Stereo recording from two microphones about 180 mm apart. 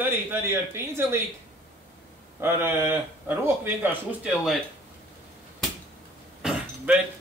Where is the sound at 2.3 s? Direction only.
10° right (ahead or behind).